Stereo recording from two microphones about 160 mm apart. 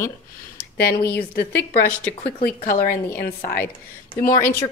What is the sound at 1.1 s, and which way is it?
Speech, 90° left.